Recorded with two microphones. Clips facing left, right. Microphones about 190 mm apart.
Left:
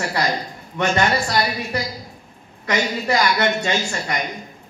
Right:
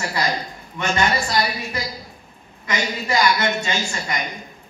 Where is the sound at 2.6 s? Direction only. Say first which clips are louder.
Left 4 dB; 65° left (ahead or behind).